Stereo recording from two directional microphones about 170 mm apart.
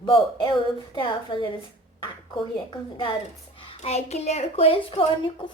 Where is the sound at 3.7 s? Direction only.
40° left (ahead or behind).